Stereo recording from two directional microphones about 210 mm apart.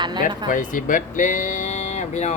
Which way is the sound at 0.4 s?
40° left (ahead or behind).